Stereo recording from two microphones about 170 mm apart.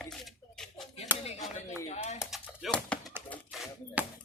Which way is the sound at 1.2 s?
40° left (ahead or behind).